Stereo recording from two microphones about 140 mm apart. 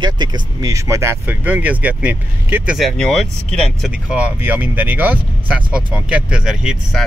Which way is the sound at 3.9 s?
10° right (ahead or behind).